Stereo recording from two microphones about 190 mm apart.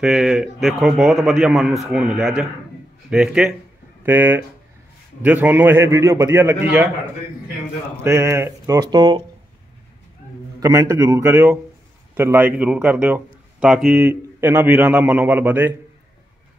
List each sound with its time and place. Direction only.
0.0 s speech: 5° right (ahead or behind)
8.0 s speech: 15° right (ahead or behind)
10.6 s speech: 15° right (ahead or behind)